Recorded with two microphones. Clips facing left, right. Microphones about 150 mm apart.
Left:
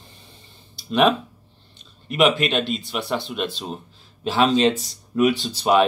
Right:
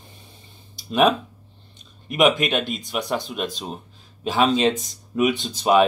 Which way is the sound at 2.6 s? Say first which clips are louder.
Left 3 dB; 45° right (ahead or behind).